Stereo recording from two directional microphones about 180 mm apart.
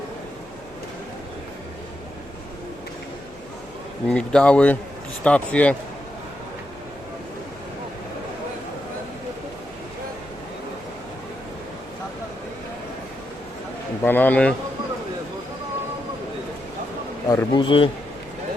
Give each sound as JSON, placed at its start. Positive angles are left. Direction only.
{"t": 4.0, "sound": "speech", "side_deg": 5}
{"t": 14.0, "sound": "speech", "side_deg": 10}
{"t": 17.2, "sound": "a man's voice", "side_deg": 25}